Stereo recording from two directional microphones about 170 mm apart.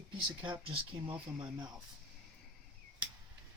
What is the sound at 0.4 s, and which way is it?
Speech, 30° right (ahead or behind).